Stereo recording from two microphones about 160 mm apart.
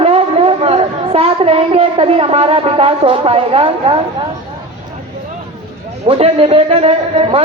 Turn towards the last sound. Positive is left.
turn(degrees=-40)  # may be behind; listen again after turning